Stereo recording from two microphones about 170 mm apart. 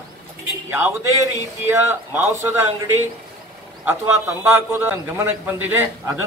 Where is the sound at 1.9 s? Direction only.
15° right (ahead or behind).